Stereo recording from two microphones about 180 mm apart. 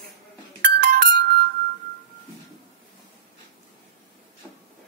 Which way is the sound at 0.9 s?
55° right (ahead or behind).